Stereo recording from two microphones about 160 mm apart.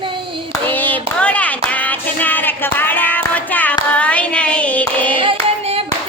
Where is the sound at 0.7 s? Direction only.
10° left (ahead or behind).